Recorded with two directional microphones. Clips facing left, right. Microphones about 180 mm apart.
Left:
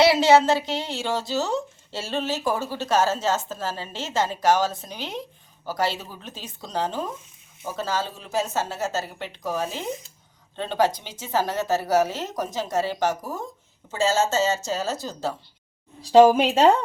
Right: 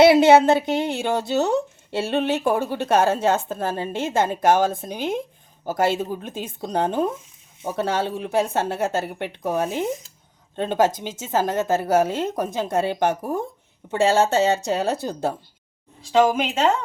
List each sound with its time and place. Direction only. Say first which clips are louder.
0.0 s a woman's voice: right 4 dB; 55° right (ahead or behind)
16.0 s speech: left 4 dB; 35° left (ahead or behind)